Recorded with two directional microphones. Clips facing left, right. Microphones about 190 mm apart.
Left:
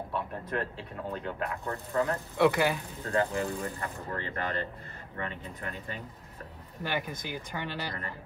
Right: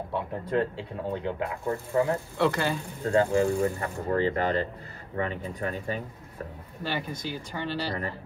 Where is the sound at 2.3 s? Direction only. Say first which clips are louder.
Left 3 dB; 15° left (ahead or behind).